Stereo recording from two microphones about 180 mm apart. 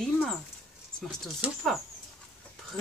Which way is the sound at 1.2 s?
Centre (ahead or behind).